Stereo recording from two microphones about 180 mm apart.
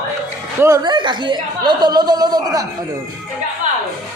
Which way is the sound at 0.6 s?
20° right (ahead or behind).